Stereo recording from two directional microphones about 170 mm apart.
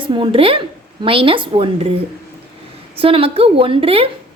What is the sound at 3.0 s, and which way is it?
A woman's voice, 35° right (ahead or behind).